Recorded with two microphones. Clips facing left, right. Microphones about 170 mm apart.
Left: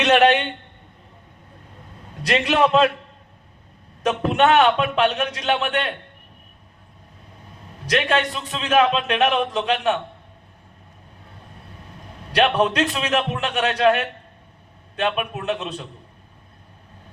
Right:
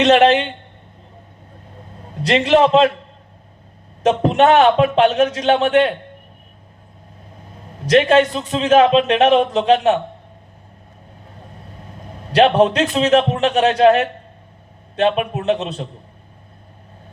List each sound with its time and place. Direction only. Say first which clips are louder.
0.0 s a man's voice: right 4 dB; 25° right (ahead or behind)
2.2 s a man's voice: right 5 dB; 30° right (ahead or behind)
4.0 s a man's voice: right 5 dB; 30° right (ahead or behind)
7.9 s a man's voice: right 9 dB; 35° right (ahead or behind)
12.3 s a man's voice: right 6 dB; 35° right (ahead or behind)